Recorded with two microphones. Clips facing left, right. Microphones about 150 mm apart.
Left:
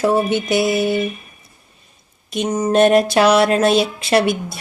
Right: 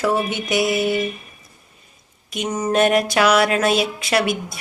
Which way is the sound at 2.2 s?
30° left (ahead or behind).